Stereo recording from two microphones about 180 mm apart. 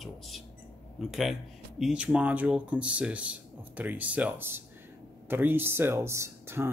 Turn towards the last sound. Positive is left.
turn(degrees=-15)  # may be behind; listen again after turning